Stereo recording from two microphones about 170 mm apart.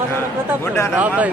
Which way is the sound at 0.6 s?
15° left (ahead or behind).